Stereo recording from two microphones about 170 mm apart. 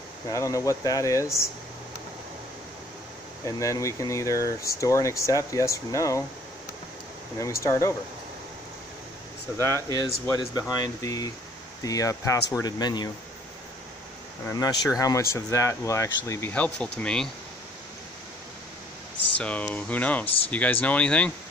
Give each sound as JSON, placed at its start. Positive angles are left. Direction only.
{"t": 0.3, "sound": "speech", "side_deg": 20}
{"t": 3.4, "sound": "speech", "side_deg": 20}
{"t": 7.3, "sound": "speech", "side_deg": 15}
{"t": 9.8, "sound": "speech", "side_deg": 20}
{"t": 14.5, "sound": "speech", "side_deg": 20}
{"t": 19.3, "sound": "speech", "side_deg": 5}